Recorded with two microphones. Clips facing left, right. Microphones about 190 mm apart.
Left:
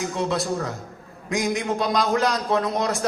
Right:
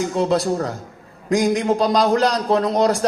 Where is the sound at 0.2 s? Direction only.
35° right (ahead or behind).